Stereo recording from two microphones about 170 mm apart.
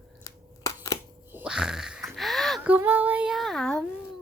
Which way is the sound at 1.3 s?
10° right (ahead or behind).